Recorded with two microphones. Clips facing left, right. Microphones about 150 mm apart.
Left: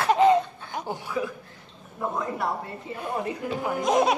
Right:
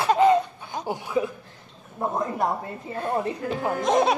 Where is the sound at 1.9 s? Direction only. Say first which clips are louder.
Right 3 dB; 40° right (ahead or behind).